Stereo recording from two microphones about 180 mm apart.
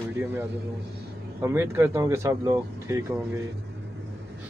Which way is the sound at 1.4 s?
15° right (ahead or behind).